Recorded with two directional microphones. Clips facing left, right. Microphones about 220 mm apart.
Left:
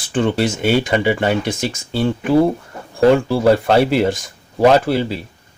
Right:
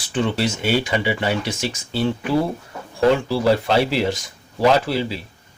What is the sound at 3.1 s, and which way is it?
Speech, 50° left (ahead or behind).